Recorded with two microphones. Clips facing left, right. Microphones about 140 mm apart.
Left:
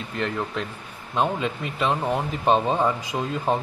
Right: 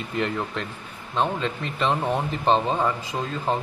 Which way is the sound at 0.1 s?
Centre (ahead or behind).